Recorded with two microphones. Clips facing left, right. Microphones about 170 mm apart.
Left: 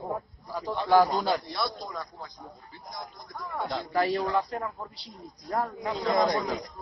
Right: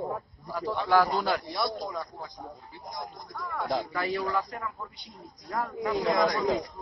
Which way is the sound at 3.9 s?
35° left (ahead or behind).